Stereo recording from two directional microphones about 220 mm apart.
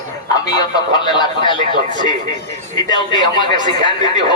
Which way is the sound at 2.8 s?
20° left (ahead or behind).